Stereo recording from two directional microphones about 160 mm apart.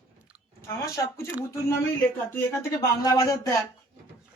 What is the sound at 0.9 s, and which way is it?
Speech, 20° left (ahead or behind).